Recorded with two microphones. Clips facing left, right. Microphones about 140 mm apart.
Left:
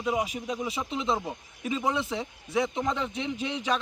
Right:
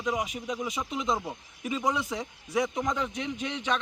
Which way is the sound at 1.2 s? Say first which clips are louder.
Left 1 dB; centre (ahead or behind).